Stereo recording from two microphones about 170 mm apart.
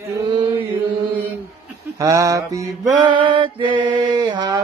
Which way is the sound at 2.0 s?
20° right (ahead or behind).